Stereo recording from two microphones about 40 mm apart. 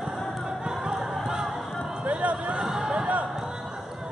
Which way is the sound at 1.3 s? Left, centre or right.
Centre.